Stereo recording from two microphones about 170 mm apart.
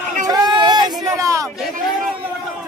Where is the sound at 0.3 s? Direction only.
25° right (ahead or behind).